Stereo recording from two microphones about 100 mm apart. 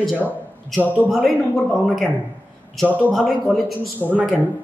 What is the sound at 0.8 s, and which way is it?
Speech, 15° left (ahead or behind).